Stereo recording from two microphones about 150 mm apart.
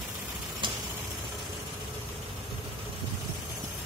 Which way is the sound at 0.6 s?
30° right (ahead or behind).